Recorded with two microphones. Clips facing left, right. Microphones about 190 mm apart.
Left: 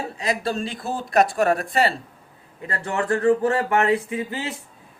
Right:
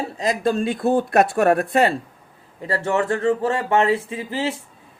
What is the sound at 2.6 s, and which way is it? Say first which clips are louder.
Speech: right 4 dB; 25° right (ahead or behind).